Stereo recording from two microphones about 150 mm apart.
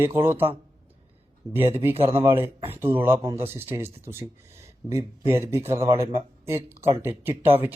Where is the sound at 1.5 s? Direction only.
20° right (ahead or behind).